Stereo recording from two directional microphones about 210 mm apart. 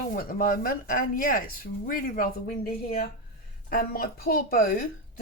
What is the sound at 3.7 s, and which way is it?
Speech, 45° left (ahead or behind).